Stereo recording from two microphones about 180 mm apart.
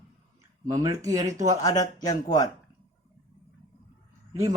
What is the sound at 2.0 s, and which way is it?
Speech, 20° left (ahead or behind).